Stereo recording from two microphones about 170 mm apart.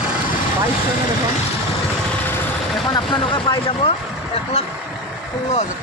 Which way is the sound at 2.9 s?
25° left (ahead or behind).